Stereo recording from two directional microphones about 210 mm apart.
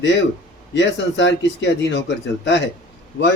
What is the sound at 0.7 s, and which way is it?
Speech, 60° left (ahead or behind).